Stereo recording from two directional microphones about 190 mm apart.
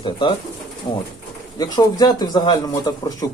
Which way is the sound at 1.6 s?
20° left (ahead or behind).